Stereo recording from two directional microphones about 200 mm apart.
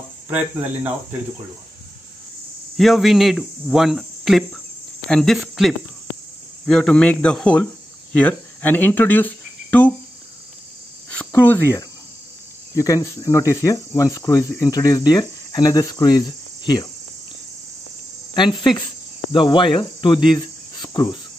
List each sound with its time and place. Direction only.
2.8 s speech: centre (ahead or behind)
8.1 s cricket: 5° left (ahead or behind)
11.1 s cricket: 10° left (ahead or behind)
12.7 s speech: 15° left (ahead or behind)
18.3 s cricket: 20° left (ahead or behind)